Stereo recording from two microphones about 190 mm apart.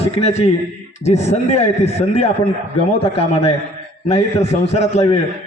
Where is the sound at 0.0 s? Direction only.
35° left (ahead or behind).